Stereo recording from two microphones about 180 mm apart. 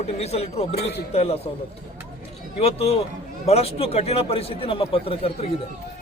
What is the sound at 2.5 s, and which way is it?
A man's voice, 35° left (ahead or behind).